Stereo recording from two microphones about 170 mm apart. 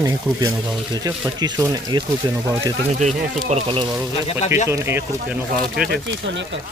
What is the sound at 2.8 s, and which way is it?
Speech, 45° right (ahead or behind).